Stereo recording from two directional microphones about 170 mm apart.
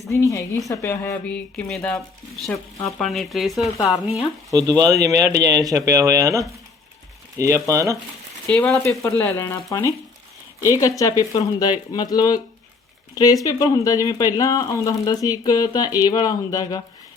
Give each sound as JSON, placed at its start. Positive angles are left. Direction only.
{"t": 0.1, "sound": "speech", "side_deg": 20}
{"t": 4.5, "sound": "speech", "side_deg": -20}
{"t": 8.4, "sound": "speech", "side_deg": 5}